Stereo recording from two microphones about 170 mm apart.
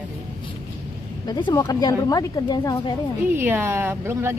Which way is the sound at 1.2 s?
25° left (ahead or behind).